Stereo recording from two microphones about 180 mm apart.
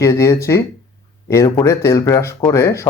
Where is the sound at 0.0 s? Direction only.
15° left (ahead or behind).